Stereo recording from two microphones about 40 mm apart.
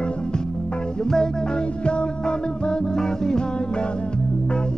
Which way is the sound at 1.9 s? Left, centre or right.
Left.